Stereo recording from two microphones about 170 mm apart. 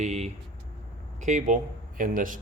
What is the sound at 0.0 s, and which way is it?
Vehicle, 40° right (ahead or behind).